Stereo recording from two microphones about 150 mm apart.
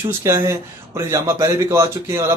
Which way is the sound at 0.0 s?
20° right (ahead or behind).